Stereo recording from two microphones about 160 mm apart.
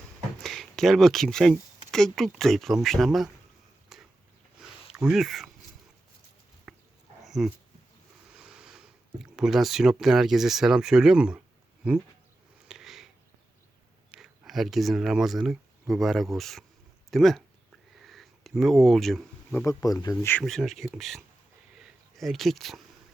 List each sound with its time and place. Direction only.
0.4 s speech: centre (ahead or behind)
3.9 s a sound: centre (ahead or behind)
4.6 s sniff: 5° right (ahead or behind)
6.7 s a sound: centre (ahead or behind)
7.3 s dog: centre (ahead or behind)
8.3 s a sound: 5° right (ahead or behind)
9.3 s speech: 5° right (ahead or behind)
12.6 s sniff: 5° right (ahead or behind)
14.1 s speech: 5° right (ahead or behind)
18.0 s bee: centre (ahead or behind)
19.6 s speech: 20° left (ahead or behind)
20.4 s speech: centre (ahead or behind)